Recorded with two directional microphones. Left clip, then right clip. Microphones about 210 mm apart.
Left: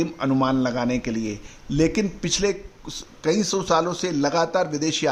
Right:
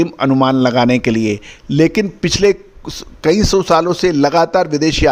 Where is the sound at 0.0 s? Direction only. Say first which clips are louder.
Right 9 dB; 35° right (ahead or behind).